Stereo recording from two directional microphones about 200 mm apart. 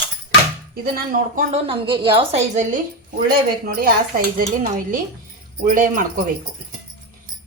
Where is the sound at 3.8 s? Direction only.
45° right (ahead or behind).